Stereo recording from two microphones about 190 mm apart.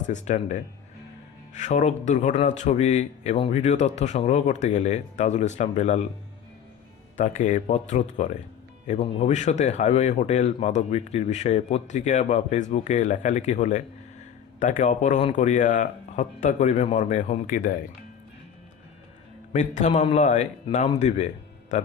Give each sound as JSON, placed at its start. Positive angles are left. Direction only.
{"t": 0.0, "sound": "a man's voice", "side_deg": 40}
{"t": 7.2, "sound": "a man's voice", "side_deg": 40}
{"t": 19.5, "sound": "a man's voice", "side_deg": 40}